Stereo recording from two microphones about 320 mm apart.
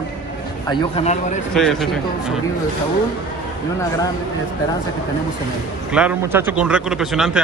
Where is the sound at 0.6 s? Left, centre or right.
Centre.